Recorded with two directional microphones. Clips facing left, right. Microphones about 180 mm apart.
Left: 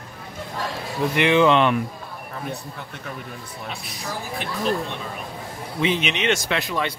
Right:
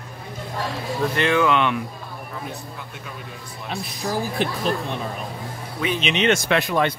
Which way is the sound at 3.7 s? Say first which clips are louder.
Right 8 dB; 35° right (ahead or behind).